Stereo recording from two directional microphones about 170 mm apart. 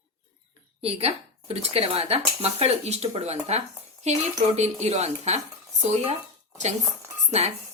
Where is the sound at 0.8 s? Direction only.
35° right (ahead or behind).